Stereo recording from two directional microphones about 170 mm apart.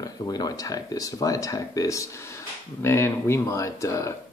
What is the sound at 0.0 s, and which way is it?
Speech, 25° left (ahead or behind).